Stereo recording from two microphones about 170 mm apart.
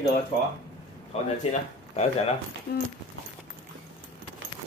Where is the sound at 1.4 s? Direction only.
40° left (ahead or behind).